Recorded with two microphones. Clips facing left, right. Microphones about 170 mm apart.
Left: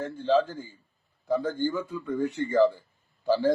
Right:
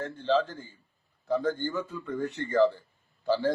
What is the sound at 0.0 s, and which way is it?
A man's voice, 10° left (ahead or behind).